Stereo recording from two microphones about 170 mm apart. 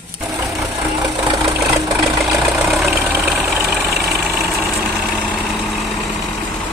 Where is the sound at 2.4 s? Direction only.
Centre (ahead or behind).